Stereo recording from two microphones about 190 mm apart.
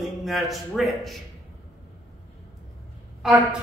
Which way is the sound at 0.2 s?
Centre (ahead or behind).